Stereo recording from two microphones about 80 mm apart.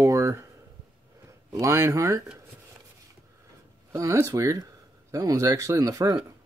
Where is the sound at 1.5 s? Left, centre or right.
Right.